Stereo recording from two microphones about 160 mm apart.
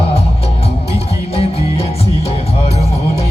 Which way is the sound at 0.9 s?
40° left (ahead or behind).